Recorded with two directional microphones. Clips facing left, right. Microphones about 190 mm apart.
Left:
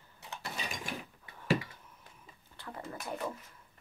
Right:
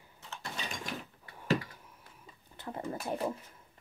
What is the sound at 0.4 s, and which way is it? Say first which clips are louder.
Mechanisms: even; 5° left (ahead or behind).